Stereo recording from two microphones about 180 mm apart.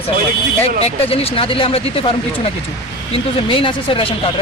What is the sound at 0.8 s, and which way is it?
Speech, 30° left (ahead or behind).